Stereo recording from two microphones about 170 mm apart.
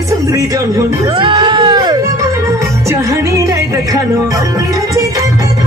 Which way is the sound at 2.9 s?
20° right (ahead or behind).